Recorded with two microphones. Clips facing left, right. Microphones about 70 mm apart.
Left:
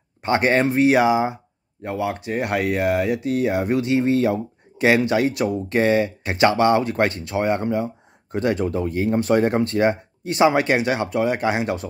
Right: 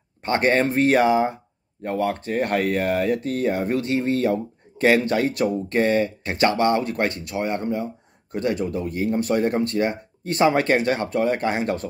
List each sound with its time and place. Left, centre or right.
0.2 s speech: centre